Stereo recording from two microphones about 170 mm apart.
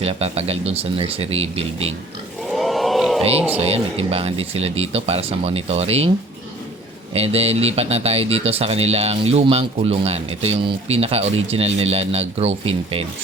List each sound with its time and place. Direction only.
0.0 s speech: 35° right (ahead or behind)
2.5 s a sound: centre (ahead or behind)
3.7 s speech: 35° right (ahead or behind)
7.1 s speech: 35° right (ahead or behind)